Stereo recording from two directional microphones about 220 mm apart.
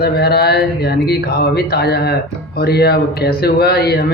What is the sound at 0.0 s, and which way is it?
Speech, 45° left (ahead or behind).